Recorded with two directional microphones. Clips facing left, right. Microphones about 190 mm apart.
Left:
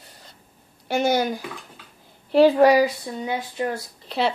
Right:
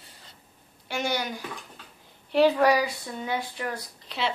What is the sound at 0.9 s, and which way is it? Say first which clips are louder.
Speech: left 8 dB; 40° left (ahead or behind).